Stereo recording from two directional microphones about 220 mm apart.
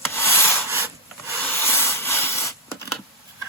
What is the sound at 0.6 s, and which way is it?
Rub, 10° right (ahead or behind).